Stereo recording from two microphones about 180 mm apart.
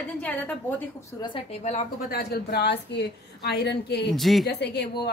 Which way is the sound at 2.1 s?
60° left (ahead or behind).